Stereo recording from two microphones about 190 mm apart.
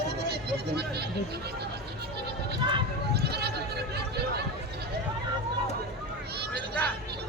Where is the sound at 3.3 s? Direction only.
60° right (ahead or behind).